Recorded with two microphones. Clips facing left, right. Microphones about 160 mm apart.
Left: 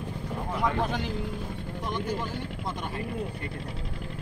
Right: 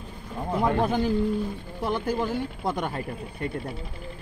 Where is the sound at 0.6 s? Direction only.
30° right (ahead or behind).